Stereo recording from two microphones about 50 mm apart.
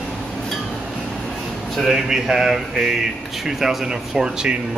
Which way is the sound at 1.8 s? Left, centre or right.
Centre.